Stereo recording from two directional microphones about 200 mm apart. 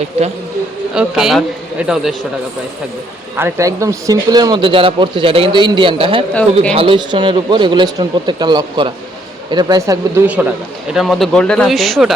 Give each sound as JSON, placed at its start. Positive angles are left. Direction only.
{"t": 0.9, "sound": "speech", "side_deg": -5}
{"t": 3.3, "sound": "a man's voice", "side_deg": -15}